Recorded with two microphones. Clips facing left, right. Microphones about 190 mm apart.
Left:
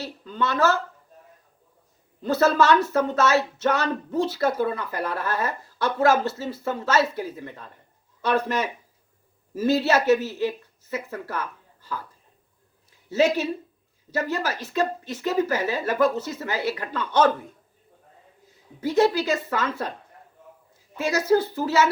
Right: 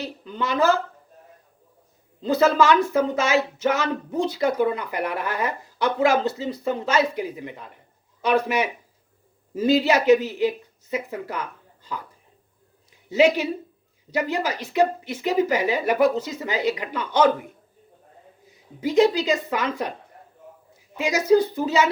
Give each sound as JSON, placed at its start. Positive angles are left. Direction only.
{"t": 0.3, "sound": "speech", "side_deg": -15}
{"t": 2.2, "sound": "speech", "side_deg": -15}
{"t": 13.1, "sound": "speech", "side_deg": -15}
{"t": 18.4, "sound": "speech", "side_deg": -15}
{"t": 20.9, "sound": "speech", "side_deg": -15}